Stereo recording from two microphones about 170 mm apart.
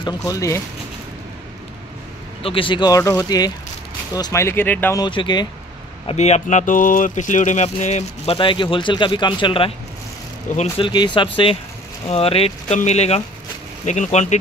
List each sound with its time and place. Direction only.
0.0 s speech: 20° left (ahead or behind)
2.4 s speech: 30° left (ahead or behind); by 5.0 s 10° left (ahead or behind)
5.0 s speech: 25° left (ahead or behind)
6.0 s speech: 40° left (ahead or behind)
10.5 s speech: 40° left (ahead or behind)
10.9 s speech: 25° left (ahead or behind); by 14.4 s 45° left (ahead or behind)